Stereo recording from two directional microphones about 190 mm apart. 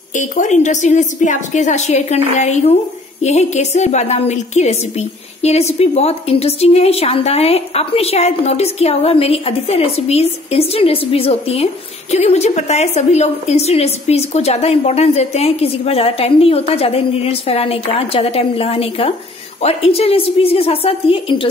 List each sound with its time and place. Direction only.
0.1 s a woman's voice: 40° left (ahead or behind)